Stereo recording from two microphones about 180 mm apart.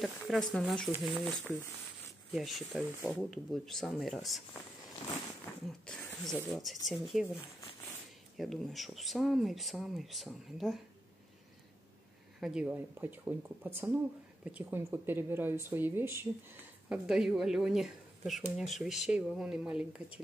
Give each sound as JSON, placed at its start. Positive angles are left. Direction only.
{"t": 0.0, "sound": "speech", "side_deg": 0}
{"t": 5.7, "sound": "speech", "side_deg": 5}
{"t": 8.4, "sound": "speech", "side_deg": 0}
{"t": 12.4, "sound": "speech", "side_deg": -5}